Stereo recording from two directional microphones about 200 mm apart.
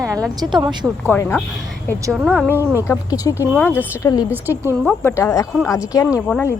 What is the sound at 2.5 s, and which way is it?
Speech, 10° right (ahead or behind).